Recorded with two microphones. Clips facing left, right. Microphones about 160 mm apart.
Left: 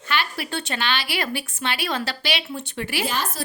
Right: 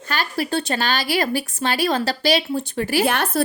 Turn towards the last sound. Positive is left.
turn(degrees=-65)  # may be behind; listen again after turning